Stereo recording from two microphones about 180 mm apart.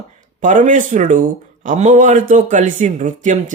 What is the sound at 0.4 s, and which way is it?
Speech, 45° right (ahead or behind).